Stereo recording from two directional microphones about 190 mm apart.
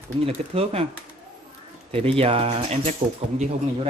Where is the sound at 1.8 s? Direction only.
30° right (ahead or behind).